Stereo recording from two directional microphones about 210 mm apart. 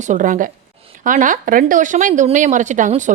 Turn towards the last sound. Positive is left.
turn(degrees=-35)  # may be behind; listen again after turning